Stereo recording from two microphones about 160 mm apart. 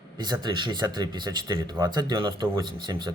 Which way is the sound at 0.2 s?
30° right (ahead or behind).